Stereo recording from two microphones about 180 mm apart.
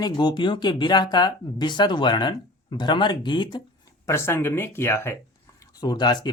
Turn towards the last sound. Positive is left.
turn(degrees=25)  # may be behind; listen again after turning